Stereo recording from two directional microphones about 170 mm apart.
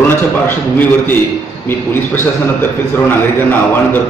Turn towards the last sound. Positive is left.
turn(degrees=10)  # may be behind; listen again after turning